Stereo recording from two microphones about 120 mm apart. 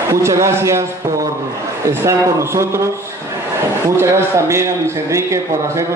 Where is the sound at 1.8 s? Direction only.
25° right (ahead or behind).